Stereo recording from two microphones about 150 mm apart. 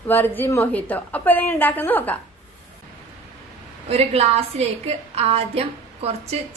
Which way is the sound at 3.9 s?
45° right (ahead or behind).